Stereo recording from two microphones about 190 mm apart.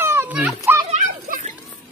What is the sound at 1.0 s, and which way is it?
Children playing, 45° right (ahead or behind).